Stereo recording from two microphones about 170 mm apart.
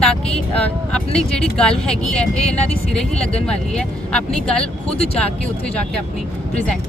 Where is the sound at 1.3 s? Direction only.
5° left (ahead or behind).